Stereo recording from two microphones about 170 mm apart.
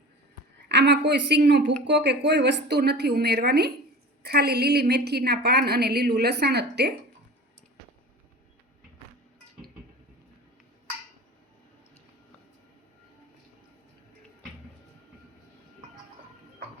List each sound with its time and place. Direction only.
0.7 s a woman's voice: 90° right